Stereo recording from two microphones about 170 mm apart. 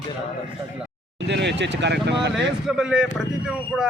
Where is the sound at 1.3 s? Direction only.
90° right.